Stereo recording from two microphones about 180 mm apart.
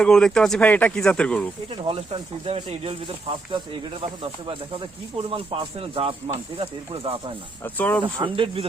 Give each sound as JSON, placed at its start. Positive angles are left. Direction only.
{"t": 0.0, "sound": "speech", "side_deg": 5}
{"t": 1.7, "sound": "speech", "side_deg": -30}
{"t": 7.6, "sound": "speech", "side_deg": 10}
{"t": 8.0, "sound": "speech", "side_deg": -30}